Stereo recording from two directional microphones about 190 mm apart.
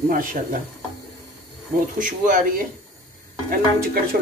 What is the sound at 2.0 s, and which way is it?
Speech, 45° right (ahead or behind).